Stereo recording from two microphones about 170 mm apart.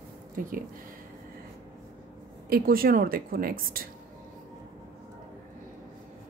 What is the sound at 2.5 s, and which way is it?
Speech, 60° right (ahead or behind).